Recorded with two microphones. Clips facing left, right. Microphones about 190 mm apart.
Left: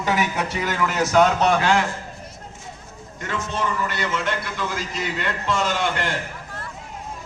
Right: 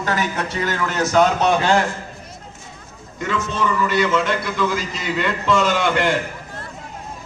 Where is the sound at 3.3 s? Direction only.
90° right.